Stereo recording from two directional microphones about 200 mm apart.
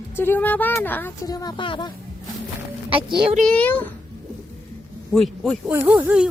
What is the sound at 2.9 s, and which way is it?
Speech, 25° right (ahead or behind).